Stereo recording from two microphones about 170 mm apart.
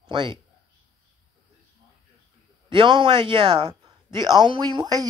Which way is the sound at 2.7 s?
30° right (ahead or behind).